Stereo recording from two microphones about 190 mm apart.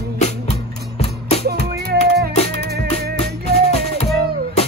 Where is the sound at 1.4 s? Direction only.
55° right (ahead or behind).